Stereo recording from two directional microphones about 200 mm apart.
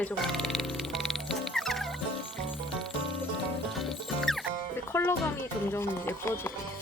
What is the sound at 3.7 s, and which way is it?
Music, centre (ahead or behind).